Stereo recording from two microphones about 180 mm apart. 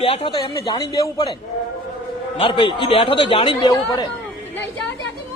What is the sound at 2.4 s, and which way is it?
Speech, 30° left (ahead or behind).